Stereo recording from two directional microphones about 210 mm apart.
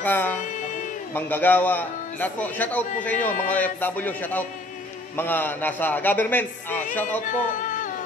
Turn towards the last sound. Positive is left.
turn(degrees=35)  # may be behind; listen again after turning